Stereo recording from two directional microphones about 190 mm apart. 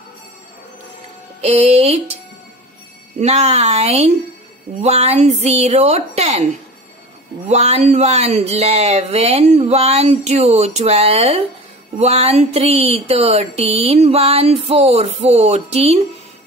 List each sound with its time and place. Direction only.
1.4 s speech: 35° right (ahead or behind)
3.2 s speech: 35° right (ahead or behind)
7.4 s speech: 35° right (ahead or behind)